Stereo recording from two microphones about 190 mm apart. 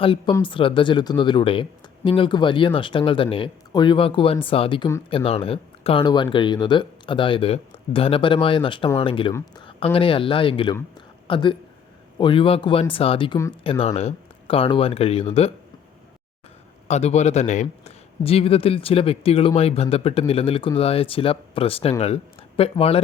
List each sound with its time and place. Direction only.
0.0 s a man's voice: 25° left (ahead or behind)
16.9 s a man's voice: 35° left (ahead or behind)